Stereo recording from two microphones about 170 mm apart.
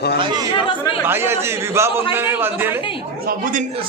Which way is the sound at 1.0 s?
15° right (ahead or behind).